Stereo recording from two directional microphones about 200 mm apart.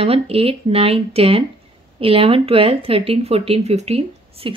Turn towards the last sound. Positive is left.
turn(degrees=-30)  # may be behind; listen again after turning